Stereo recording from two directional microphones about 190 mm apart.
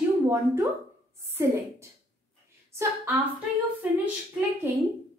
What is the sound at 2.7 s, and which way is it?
Speech, 15° right (ahead or behind).